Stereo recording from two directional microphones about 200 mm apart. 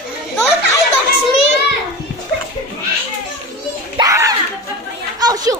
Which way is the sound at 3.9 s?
15° right (ahead or behind).